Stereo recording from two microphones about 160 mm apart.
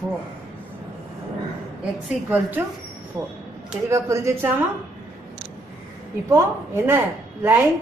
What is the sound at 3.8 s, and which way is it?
Speech, 20° right (ahead or behind).